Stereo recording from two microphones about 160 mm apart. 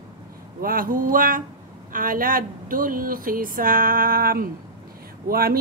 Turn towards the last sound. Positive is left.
turn(degrees=-70)  # may be behind; listen again after turning